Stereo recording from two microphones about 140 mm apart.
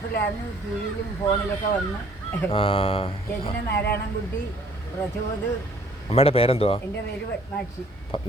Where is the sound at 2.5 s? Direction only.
40° left (ahead or behind).